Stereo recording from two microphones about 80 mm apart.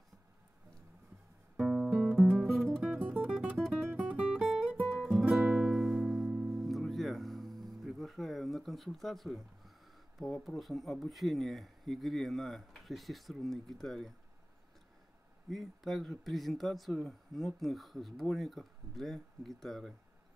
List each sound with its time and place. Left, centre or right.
1.7 s guitar: centre
2.8 s music: centre
3.5 s music: centre
4.1 s guitar: centre
4.7 s music: centre
5.4 s music: centre
10.1 s speech: centre
15.5 s speech: centre